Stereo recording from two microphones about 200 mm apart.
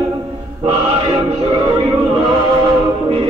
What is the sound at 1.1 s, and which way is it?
Music, 25° right (ahead or behind).